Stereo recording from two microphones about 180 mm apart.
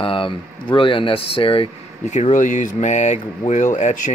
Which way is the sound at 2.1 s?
40° left (ahead or behind).